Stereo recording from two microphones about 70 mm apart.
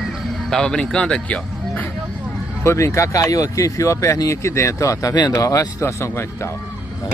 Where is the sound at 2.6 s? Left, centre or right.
Left.